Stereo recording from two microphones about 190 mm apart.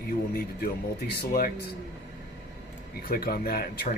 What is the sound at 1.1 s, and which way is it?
Speech, 55° left (ahead or behind).